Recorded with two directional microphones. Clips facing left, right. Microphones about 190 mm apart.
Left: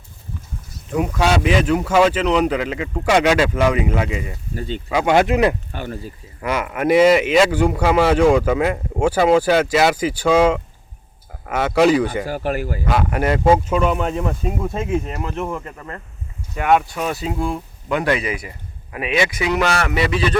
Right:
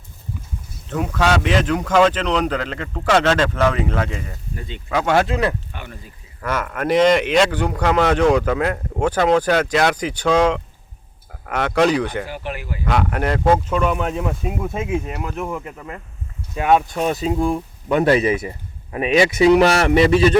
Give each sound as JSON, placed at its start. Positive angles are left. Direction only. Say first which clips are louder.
{"t": 0.9, "sound": "speech", "louder": "left 1 dB", "side_deg": 10}
{"t": 4.5, "sound": "speech", "louder": "left 8 dB", "side_deg": 30}
{"t": 4.9, "sound": "speech", "louder": "left 2 dB", "side_deg": 15}
{"t": 5.7, "sound": "speech", "louder": "left 7 dB", "side_deg": 35}
{"t": 6.4, "sound": "speech", "louder": "left 3 dB", "side_deg": 10}
{"t": 12.3, "sound": "speech", "louder": "left 6 dB", "side_deg": 40}
{"t": 12.9, "sound": "speech", "louder": "left 1 dB", "side_deg": 5}
{"t": 16.6, "sound": "speech", "louder": "right 1 dB", "side_deg": -20}